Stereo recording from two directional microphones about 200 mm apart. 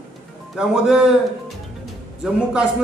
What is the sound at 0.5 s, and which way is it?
A man's voice, 5° right (ahead or behind).